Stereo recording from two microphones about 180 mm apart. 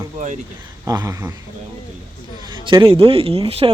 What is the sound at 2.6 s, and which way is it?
Speech, 25° right (ahead or behind).